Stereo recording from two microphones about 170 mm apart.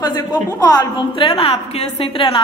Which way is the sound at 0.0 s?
20° left (ahead or behind).